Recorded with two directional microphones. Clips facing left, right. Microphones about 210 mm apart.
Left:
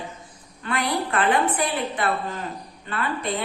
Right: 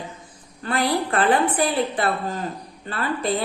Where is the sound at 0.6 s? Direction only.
35° right (ahead or behind).